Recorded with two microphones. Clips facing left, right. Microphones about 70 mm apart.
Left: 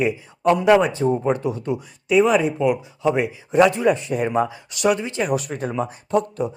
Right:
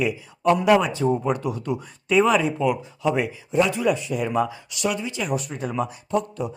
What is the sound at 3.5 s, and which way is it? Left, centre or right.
Speech, left.